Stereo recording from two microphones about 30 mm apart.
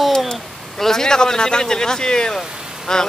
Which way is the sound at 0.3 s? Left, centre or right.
Centre.